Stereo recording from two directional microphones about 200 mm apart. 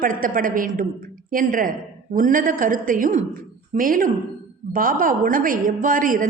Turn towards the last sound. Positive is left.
turn(degrees=-45)  # may be behind; listen again after turning